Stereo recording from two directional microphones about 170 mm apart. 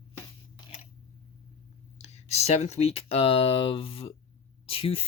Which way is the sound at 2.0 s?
40° left (ahead or behind).